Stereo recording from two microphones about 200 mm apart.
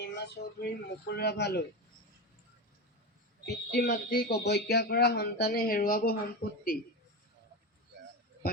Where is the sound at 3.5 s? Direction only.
50° left (ahead or behind).